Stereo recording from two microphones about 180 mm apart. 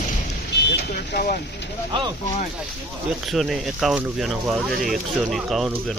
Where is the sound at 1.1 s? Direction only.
55° left (ahead or behind).